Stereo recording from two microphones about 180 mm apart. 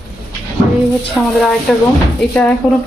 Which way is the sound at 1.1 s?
Centre (ahead or behind).